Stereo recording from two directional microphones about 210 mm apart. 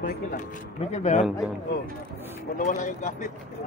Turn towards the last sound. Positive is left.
turn(degrees=35)  # may be behind; listen again after turning